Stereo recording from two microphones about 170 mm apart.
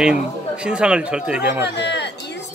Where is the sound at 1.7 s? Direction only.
90° left.